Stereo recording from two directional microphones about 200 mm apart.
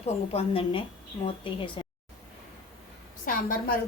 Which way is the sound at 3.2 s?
45° left (ahead or behind).